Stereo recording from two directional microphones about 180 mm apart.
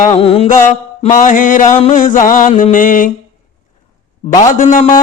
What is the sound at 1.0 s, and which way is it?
Speech, 45° left (ahead or behind).